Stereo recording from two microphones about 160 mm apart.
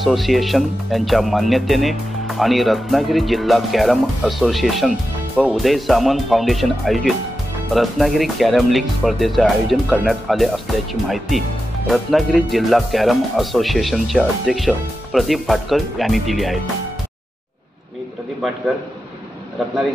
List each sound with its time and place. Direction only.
0.0 s speech: centre (ahead or behind)